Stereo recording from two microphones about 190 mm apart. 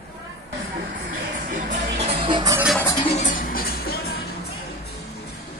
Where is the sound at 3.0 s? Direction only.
40° left (ahead or behind).